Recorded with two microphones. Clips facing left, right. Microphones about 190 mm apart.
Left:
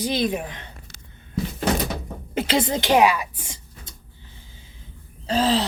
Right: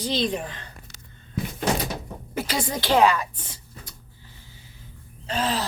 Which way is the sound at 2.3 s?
25° left (ahead or behind).